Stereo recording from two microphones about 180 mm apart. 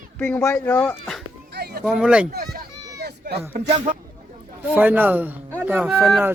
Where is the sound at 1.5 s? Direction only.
65° right (ahead or behind).